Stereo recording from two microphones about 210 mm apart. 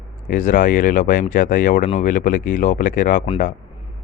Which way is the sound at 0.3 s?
40° left (ahead or behind).